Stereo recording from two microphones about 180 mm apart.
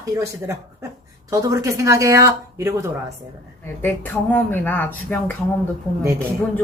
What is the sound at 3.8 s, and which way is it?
Speech, 10° left (ahead or behind).